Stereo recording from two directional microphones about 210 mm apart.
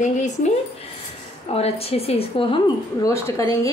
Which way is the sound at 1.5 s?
30° left (ahead or behind).